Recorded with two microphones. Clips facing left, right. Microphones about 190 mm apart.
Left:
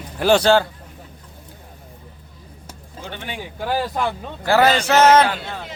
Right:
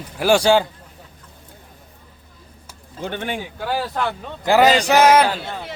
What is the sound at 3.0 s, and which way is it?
Speech, 55° right (ahead or behind).